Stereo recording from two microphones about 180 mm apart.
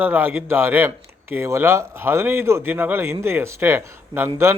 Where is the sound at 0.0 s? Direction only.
10° right (ahead or behind).